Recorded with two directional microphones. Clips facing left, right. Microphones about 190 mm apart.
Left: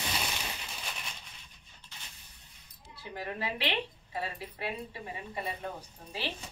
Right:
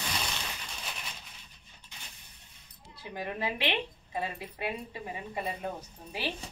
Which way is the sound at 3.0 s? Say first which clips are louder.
Right 2 dB; 20° right (ahead or behind).